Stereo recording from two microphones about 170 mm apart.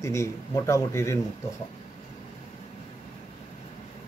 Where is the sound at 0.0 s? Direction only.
20° left (ahead or behind).